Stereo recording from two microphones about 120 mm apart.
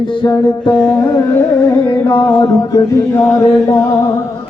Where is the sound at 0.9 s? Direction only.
25° left (ahead or behind).